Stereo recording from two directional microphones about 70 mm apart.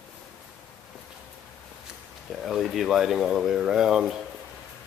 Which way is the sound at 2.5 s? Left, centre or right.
Centre.